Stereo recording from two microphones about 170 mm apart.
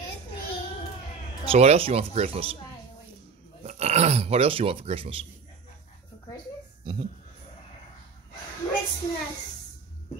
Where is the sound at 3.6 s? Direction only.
40° right (ahead or behind).